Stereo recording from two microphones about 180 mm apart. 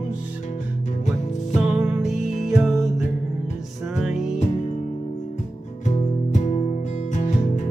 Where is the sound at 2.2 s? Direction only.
40° left (ahead or behind).